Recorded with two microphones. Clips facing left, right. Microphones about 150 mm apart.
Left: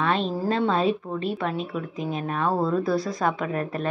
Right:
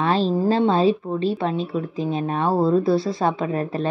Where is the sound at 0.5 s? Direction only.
30° right (ahead or behind).